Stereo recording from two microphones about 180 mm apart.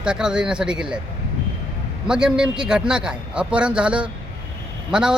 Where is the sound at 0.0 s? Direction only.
5° right (ahead or behind).